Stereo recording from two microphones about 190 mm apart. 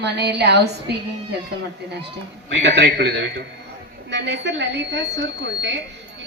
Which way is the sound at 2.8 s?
65° right (ahead or behind).